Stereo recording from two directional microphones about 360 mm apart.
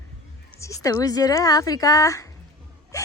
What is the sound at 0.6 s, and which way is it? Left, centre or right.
Speech, centre.